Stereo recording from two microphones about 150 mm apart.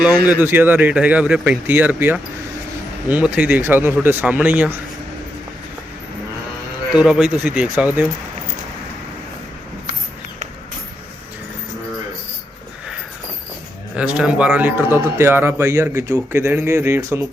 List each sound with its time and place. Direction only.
0.3 s a man's voice: 15° right (ahead or behind)
6.9 s a man's voice: 5° right (ahead or behind)
13.9 s a man's voice: 5° right (ahead or behind)